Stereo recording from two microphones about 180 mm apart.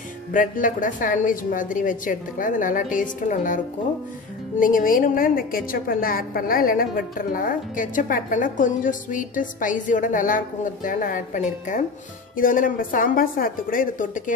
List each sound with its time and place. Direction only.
0.3 s a woman's voice: 45° left (ahead or behind)